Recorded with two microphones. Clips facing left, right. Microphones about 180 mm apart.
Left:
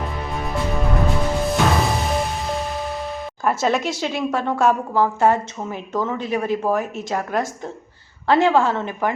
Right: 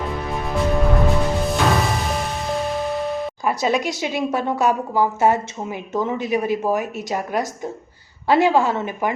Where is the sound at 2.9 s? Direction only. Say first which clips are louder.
Right 5 dB; centre (ahead or behind).